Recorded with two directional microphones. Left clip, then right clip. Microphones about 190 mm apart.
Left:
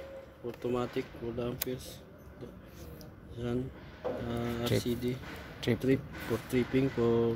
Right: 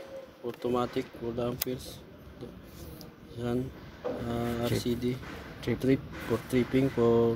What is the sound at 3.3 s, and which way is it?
Speech, 5° right (ahead or behind).